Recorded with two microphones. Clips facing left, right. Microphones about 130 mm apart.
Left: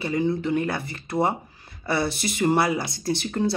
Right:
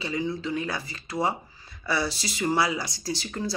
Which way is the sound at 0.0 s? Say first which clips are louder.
Left 5 dB; 50° left (ahead or behind).